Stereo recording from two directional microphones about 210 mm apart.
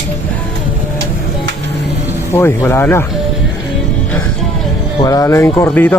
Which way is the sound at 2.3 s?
10° left (ahead or behind).